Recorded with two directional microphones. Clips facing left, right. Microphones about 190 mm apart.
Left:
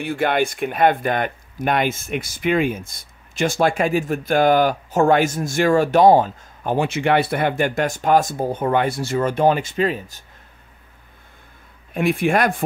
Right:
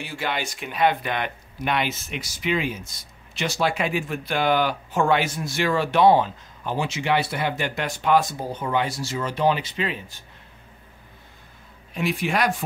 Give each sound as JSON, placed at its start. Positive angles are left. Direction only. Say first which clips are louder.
{"t": 0.0, "sound": "speech", "louder": "left 9 dB", "side_deg": 55}
{"t": 11.9, "sound": "speech", "louder": "left 6 dB", "side_deg": 55}